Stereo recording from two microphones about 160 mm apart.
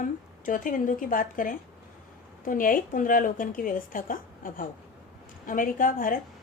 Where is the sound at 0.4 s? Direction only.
55° left (ahead or behind).